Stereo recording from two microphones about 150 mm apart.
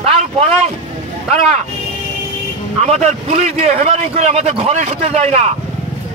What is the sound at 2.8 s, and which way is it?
A man's voice, 50° right (ahead or behind).